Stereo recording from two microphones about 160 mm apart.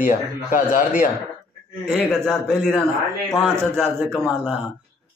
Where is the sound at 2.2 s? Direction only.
5° left (ahead or behind).